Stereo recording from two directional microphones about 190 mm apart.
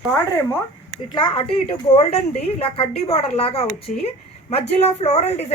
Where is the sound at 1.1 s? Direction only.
25° left (ahead or behind).